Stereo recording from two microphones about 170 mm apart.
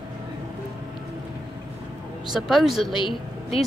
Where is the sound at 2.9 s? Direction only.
30° left (ahead or behind).